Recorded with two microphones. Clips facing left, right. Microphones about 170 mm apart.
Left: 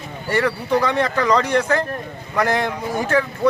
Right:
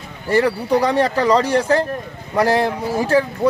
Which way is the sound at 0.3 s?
30° right (ahead or behind).